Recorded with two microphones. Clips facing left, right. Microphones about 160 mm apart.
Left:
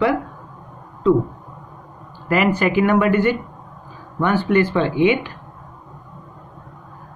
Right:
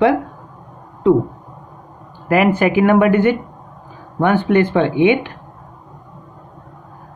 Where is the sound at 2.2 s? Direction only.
50° right (ahead or behind).